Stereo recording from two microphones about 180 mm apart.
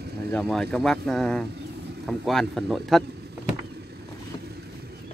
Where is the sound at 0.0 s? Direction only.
65° right (ahead or behind).